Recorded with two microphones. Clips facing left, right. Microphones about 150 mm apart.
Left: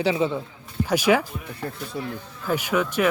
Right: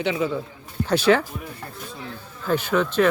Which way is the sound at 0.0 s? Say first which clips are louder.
Left 2 dB; 35° left (ahead or behind).